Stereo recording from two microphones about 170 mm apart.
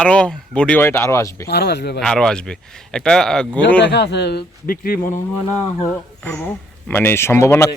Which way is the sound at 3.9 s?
85° left.